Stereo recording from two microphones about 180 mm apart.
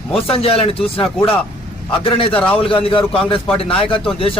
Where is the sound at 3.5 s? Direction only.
30° left (ahead or behind).